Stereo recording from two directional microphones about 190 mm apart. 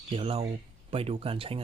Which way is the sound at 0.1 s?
30° right (ahead or behind).